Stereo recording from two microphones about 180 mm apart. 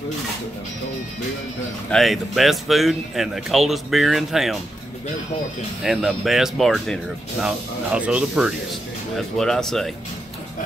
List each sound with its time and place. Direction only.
1.9 s speech: centre (ahead or behind)
5.9 s speech: centre (ahead or behind)